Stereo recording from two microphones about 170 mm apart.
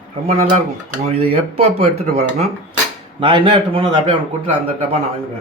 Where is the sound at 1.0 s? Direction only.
35° right (ahead or behind).